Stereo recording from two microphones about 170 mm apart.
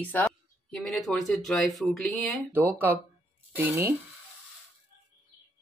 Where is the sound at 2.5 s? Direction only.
10° right (ahead or behind).